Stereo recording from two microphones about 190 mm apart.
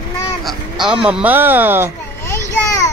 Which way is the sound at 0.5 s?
Centre (ahead or behind).